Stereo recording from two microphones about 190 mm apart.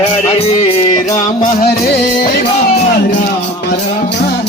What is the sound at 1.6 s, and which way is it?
Music, 50° left (ahead or behind).